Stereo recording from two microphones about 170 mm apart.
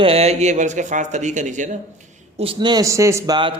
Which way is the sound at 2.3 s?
30° right (ahead or behind).